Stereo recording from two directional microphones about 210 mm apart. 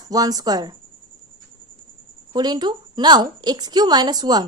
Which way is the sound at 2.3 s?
20° right (ahead or behind).